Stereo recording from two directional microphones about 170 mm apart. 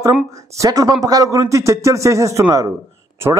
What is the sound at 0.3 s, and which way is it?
A man's voice, 20° right (ahead or behind).